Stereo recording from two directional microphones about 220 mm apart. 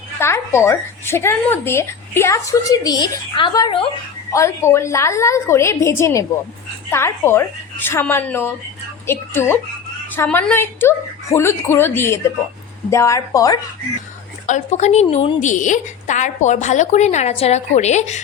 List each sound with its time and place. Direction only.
0.2 s speech: 10° left (ahead or behind)
14.4 s a woman's voice: 30° left (ahead or behind)